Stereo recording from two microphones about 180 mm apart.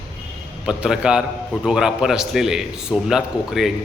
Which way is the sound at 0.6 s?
5° right (ahead or behind).